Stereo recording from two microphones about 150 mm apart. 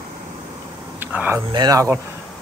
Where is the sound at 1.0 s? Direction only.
10° right (ahead or behind).